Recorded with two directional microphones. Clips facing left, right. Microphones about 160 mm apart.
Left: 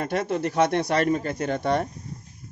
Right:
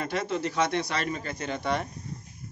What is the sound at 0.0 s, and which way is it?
Speech, 50° left (ahead or behind).